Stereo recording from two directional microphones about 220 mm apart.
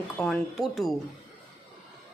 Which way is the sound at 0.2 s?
Centre (ahead or behind).